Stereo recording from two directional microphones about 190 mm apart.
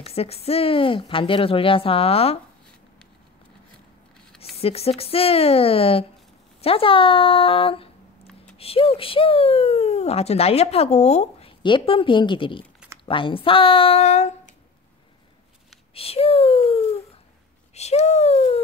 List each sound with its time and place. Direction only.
0.0 s speech: 30° left (ahead or behind)
4.6 s speech: 30° left (ahead or behind)
15.9 s a sound: 30° left (ahead or behind)
17.7 s speech: 35° left (ahead or behind)